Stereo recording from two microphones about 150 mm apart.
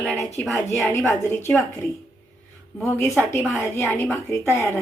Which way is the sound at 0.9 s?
15° left (ahead or behind).